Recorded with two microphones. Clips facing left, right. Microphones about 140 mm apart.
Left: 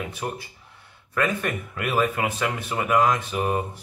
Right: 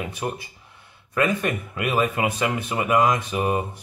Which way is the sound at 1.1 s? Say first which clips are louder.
Right 2 dB; 15° right (ahead or behind).